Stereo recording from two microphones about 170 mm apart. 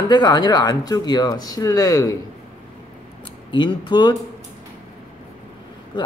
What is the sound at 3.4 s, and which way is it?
Speech, 25° left (ahead or behind).